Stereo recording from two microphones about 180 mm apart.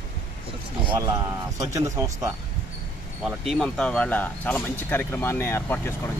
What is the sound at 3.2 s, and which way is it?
Speech, centre (ahead or behind).